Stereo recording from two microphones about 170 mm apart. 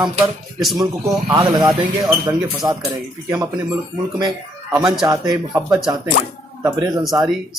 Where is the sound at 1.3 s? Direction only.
20° right (ahead or behind).